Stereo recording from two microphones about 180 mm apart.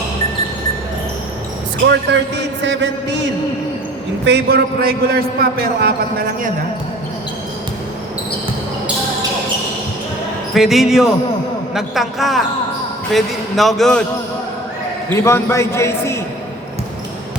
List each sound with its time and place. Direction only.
1.9 s a man's voice: 80° right
4.2 s a man's voice: 75° right (ahead or behind); by 5.9 s 60° right (ahead or behind)
10.5 s a man's voice: centre (ahead or behind)
15.1 s a man's voice: 15° left (ahead or behind)